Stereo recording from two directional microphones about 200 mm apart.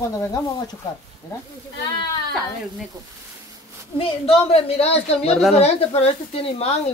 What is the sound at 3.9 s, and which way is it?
A woman's voice, 30° left (ahead or behind).